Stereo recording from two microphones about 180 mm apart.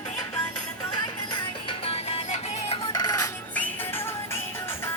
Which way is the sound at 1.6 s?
35° left (ahead or behind).